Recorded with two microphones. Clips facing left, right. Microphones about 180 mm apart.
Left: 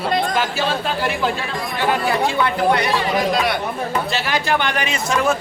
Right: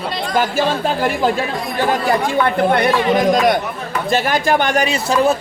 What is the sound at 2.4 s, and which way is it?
A man's voice, 50° right (ahead or behind).